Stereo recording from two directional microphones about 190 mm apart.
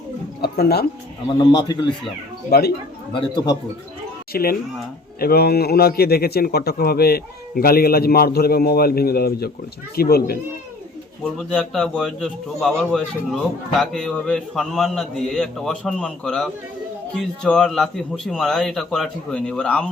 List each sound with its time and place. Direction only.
0.4 s a man's voice: 55° left (ahead or behind)
1.4 s a man's voice: 20° left (ahead or behind)
2.5 s a man's voice: 55° left (ahead or behind)
3.1 s a man's voice: 25° left (ahead or behind)
4.3 s a man's voice: 50° left (ahead or behind)
11.2 s a man's voice: 5° left (ahead or behind)